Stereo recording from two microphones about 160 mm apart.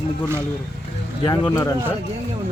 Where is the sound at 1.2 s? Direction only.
25° left (ahead or behind).